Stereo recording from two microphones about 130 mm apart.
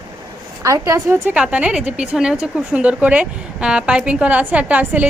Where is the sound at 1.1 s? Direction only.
15° right (ahead or behind).